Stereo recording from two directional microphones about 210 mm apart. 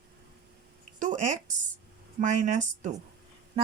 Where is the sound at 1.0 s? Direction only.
35° right (ahead or behind).